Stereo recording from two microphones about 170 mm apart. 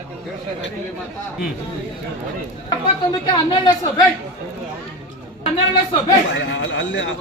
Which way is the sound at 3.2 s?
25° left (ahead or behind).